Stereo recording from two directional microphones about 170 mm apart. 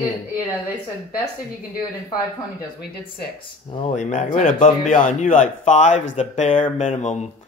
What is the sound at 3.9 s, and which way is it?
Speech, 45° left (ahead or behind).